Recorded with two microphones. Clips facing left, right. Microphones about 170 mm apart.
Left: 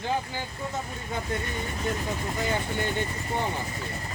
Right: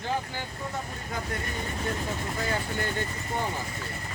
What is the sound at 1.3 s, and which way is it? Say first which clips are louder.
Speech: left 2 dB; 25° left (ahead or behind).